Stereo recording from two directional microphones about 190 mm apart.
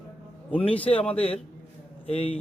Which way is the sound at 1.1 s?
30° left (ahead or behind).